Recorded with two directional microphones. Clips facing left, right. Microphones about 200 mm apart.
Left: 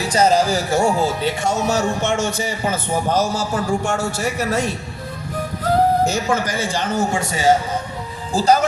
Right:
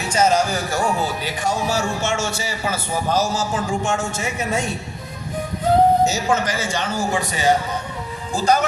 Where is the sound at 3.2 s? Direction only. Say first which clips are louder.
Right 1 dB; 10° left (ahead or behind).